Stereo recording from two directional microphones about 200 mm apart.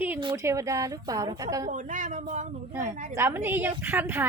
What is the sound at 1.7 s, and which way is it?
Speech, 40° right (ahead or behind).